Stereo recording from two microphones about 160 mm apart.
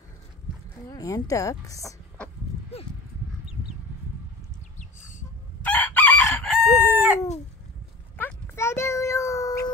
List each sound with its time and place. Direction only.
0.8 s a woman's voice: 20° left (ahead or behind)
5.6 s chicken: 10° left (ahead or behind)
8.2 s a sound: 15° left (ahead or behind)